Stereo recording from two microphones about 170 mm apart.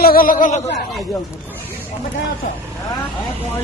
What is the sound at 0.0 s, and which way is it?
Speech, 60° left (ahead or behind).